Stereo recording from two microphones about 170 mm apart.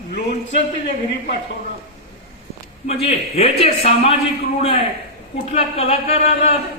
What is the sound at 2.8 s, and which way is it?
Speech, 40° left (ahead or behind).